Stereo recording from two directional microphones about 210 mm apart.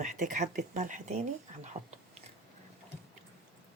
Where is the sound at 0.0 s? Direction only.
35° right (ahead or behind).